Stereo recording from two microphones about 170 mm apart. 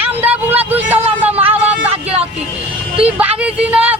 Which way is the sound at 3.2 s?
5° right (ahead or behind).